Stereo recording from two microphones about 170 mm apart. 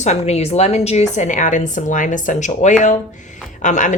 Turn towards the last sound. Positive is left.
turn(degrees=45)  # may be behind; listen again after turning